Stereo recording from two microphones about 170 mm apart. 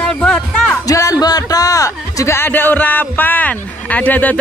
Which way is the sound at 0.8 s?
20° left (ahead or behind).